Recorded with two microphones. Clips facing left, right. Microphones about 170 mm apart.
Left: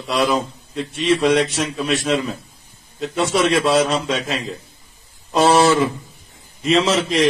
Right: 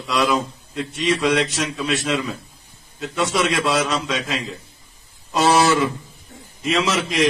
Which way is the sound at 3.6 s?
30° left (ahead or behind).